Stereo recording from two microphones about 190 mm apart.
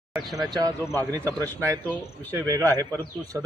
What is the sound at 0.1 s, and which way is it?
Speech, centre (ahead or behind).